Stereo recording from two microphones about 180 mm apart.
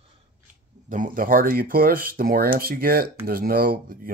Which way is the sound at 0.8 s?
45° right (ahead or behind).